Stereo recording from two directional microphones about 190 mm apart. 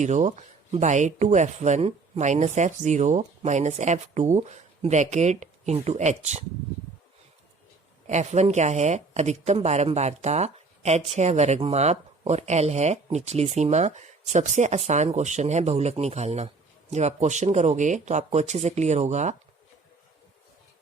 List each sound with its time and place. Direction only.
0.0 s speech: 40° right (ahead or behind)
8.0 s speech: 35° right (ahead or behind)